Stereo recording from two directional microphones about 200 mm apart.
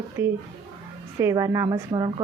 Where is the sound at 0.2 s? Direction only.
10° right (ahead or behind).